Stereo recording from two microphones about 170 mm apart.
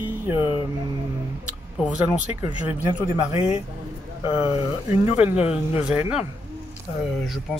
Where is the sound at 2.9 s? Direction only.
30° left (ahead or behind).